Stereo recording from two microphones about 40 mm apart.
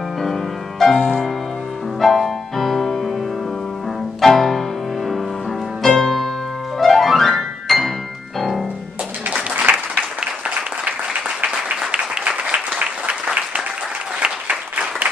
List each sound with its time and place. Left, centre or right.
0.2 s music: centre
4.2 s music: centre
9.3 s applause: right
10.9 s applause: right